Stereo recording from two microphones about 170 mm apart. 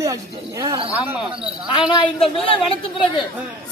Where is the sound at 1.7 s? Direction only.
30° left (ahead or behind).